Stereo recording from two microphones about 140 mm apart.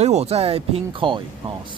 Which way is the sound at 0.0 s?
50° right (ahead or behind).